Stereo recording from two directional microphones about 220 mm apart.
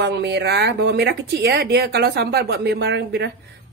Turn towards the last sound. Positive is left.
turn(degrees=-50)  # may be behind; listen again after turning